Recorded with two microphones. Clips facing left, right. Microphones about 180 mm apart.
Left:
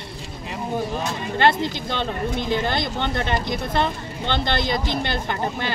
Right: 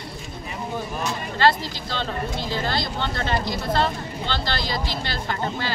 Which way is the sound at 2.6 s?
20° left (ahead or behind).